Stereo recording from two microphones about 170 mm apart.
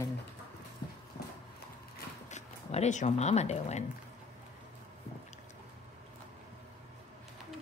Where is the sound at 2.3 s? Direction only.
45° left (ahead or behind).